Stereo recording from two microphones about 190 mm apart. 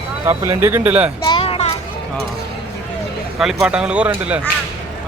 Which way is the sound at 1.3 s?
30° left (ahead or behind).